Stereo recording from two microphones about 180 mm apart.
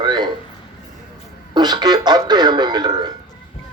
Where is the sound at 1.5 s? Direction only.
25° right (ahead or behind).